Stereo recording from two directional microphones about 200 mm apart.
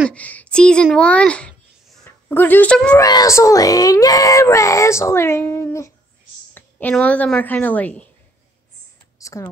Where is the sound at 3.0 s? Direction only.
15° left (ahead or behind).